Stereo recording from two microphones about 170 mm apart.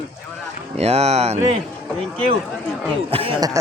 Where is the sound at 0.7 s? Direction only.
40° right (ahead or behind).